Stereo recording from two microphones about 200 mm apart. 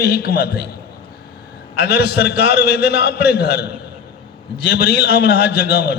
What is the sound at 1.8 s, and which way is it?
A man's voice, 50° left (ahead or behind).